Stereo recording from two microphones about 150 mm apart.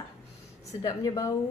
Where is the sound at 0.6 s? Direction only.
25° left (ahead or behind).